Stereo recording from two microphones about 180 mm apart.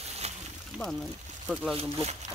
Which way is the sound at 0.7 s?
5° right (ahead or behind).